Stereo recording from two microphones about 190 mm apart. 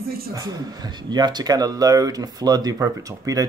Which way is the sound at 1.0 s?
20° right (ahead or behind).